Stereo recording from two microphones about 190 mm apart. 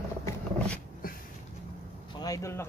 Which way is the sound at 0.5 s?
5° left (ahead or behind).